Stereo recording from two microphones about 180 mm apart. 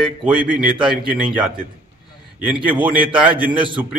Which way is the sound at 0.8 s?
25° right (ahead or behind).